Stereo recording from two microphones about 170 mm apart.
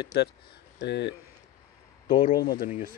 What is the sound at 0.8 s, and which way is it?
Speech, 90° left.